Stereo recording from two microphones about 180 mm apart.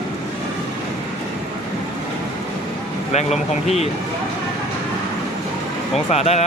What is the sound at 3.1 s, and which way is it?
Speech, 40° left (ahead or behind).